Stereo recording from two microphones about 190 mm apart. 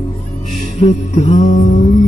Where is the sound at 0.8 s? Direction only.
35° left (ahead or behind).